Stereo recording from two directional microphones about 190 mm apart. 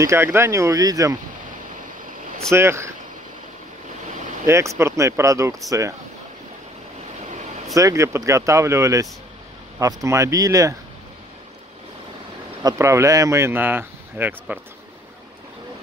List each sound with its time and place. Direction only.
0.0 s speech: 15° right (ahead or behind)
2.5 s speech: 15° right (ahead or behind)
4.5 s speech: 15° right (ahead or behind)
7.7 s speech: 15° right (ahead or behind)
12.6 s speech: 15° right (ahead or behind)